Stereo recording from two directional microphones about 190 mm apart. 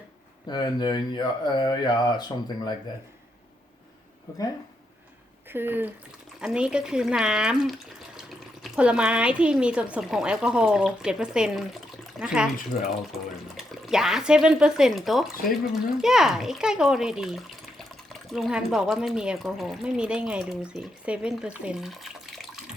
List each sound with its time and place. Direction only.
0.5 s speech: 20° left (ahead or behind)
5.5 s speech: 10° right (ahead or behind)
13.6 s speech: centre (ahead or behind)